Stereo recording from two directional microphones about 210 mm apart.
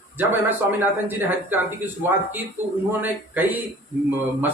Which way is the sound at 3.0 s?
10° right (ahead or behind).